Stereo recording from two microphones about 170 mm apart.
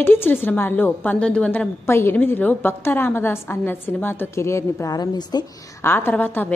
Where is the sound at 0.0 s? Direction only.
15° left (ahead or behind).